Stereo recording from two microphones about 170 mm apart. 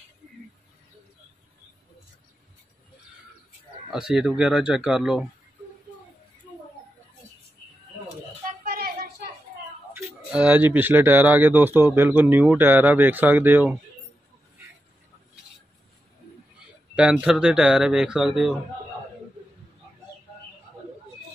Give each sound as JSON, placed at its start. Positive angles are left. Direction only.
{"t": 3.9, "sound": "speech", "side_deg": -5}
{"t": 8.6, "sound": "a sound", "side_deg": -60}
{"t": 9.9, "sound": "speech", "side_deg": -10}
{"t": 16.9, "sound": "speech", "side_deg": -5}